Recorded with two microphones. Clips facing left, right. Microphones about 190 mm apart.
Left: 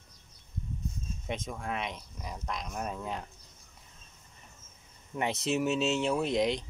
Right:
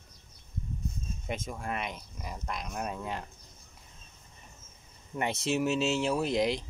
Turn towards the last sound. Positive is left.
turn(degrees=0)  # may be behind; listen again after turning